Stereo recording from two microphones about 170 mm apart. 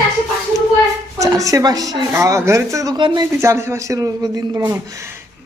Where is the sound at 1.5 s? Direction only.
20° right (ahead or behind).